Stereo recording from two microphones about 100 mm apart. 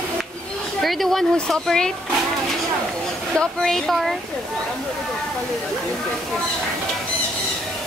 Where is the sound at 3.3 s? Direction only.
5° left (ahead or behind).